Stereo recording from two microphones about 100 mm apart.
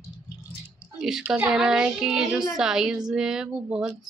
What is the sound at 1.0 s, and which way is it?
Speech, 5° right (ahead or behind).